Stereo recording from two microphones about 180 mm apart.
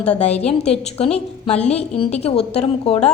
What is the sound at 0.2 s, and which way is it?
A woman's voice, 35° left (ahead or behind).